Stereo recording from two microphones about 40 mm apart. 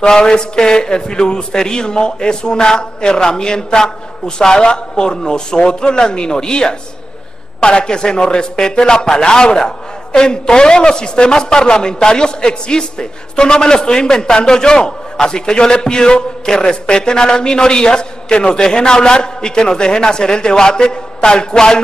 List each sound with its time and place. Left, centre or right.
0.0 s a man's voice: centre